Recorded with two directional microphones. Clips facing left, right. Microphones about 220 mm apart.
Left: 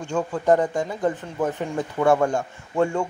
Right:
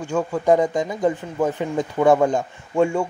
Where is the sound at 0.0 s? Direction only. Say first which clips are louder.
Right 2 dB; 10° right (ahead or behind).